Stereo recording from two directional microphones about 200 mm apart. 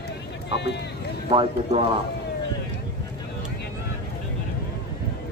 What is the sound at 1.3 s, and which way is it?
Speech, 30° right (ahead or behind).